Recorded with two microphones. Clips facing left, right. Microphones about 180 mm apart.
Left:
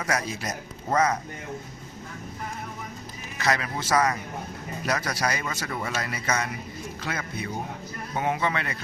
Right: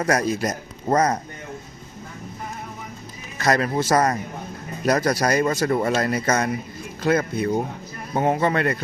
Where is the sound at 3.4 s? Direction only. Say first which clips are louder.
Right 7 dB; 45° right (ahead or behind).